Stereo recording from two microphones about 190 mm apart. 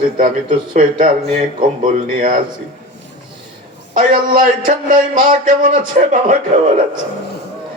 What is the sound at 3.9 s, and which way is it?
Speech, 45° right (ahead or behind).